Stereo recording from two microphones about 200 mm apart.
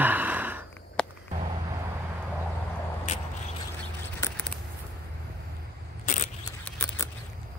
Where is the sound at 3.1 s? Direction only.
40° left (ahead or behind).